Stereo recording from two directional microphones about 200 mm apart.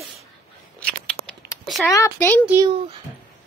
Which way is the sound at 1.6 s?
Centre (ahead or behind).